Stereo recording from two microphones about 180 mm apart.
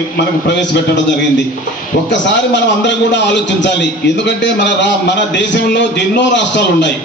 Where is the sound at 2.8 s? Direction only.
80° left.